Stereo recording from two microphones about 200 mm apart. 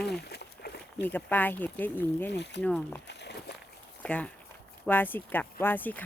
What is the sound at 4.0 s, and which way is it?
Speech, 5° left (ahead or behind).